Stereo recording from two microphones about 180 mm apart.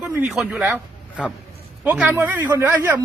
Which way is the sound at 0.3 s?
5° right (ahead or behind).